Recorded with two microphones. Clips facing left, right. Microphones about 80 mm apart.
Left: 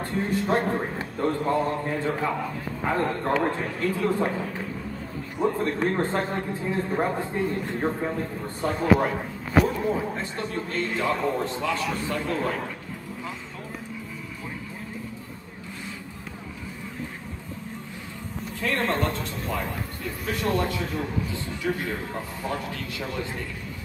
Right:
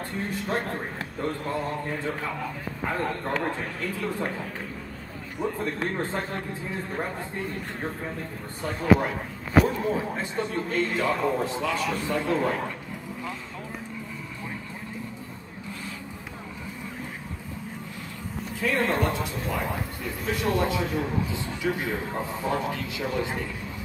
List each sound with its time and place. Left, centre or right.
0.0 s a man's voice: centre
18.6 s a sound: centre
20.3 s a man's voice: centre